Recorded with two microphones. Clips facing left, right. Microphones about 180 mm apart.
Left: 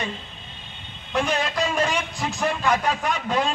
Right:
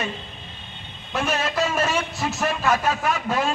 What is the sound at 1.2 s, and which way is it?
A man's voice, 5° right (ahead or behind).